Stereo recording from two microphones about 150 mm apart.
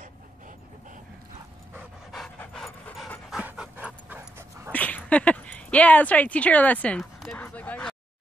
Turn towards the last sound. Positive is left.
turn(degrees=5)  # may be behind; listen again after turning